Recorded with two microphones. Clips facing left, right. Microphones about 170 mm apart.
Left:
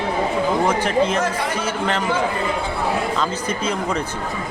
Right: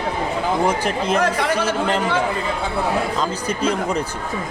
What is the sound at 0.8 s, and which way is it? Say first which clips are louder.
Speech: left 2 dB; 35° right (ahead or behind).